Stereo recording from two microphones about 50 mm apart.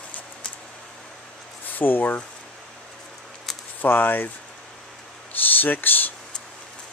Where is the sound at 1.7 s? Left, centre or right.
Left.